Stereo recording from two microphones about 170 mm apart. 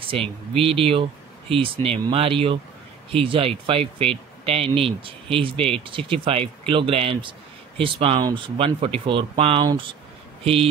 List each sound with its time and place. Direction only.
0.0 s speech: 30° right (ahead or behind)